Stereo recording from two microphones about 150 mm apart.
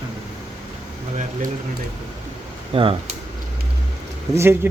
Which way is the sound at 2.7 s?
40° right (ahead or behind).